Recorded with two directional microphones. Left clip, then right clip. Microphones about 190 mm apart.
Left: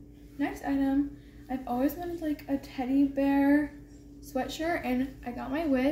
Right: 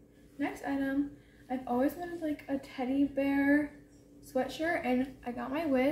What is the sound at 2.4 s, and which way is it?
A woman's voice, 5° left (ahead or behind).